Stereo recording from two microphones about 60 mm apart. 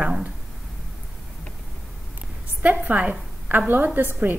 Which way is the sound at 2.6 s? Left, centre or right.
Right.